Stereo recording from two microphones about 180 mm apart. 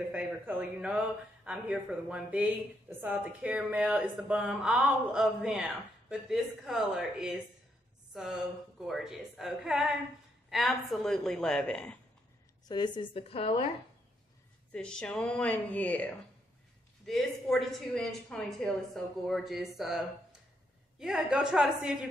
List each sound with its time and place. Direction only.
0.1 s speech: 10° right (ahead or behind)
12.6 s a woman's voice: 25° left (ahead or behind)
14.7 s speech: 5° left (ahead or behind)
21.0 s speech: 5° right (ahead or behind)